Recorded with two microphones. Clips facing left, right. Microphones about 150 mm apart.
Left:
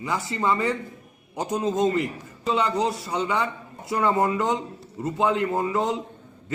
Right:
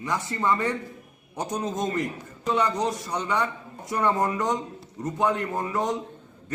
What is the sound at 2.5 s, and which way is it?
Speech, 20° left (ahead or behind).